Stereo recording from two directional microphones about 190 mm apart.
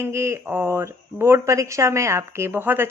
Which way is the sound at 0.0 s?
15° right (ahead or behind).